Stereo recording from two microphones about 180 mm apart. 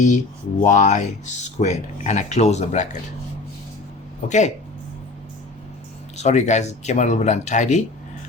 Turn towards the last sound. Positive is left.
turn(degrees=40)  # may be behind; listen again after turning